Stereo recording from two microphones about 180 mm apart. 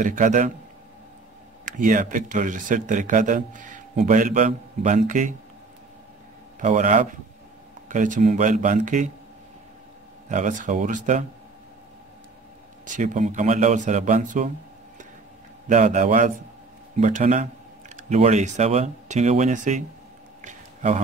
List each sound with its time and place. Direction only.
0.0 s speech: 45° right (ahead or behind)
1.8 s speech: 45° right (ahead or behind)
6.6 s speech: 45° right (ahead or behind)
10.3 s speech: 45° right (ahead or behind)
12.8 s speech: 45° right (ahead or behind)
15.7 s speech: 40° right (ahead or behind)
20.4 s a sound: 40° right (ahead or behind)